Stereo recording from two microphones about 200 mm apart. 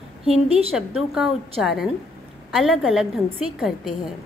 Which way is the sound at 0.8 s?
Centre (ahead or behind).